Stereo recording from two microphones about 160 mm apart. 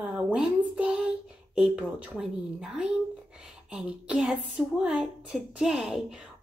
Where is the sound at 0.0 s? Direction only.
5° right (ahead or behind).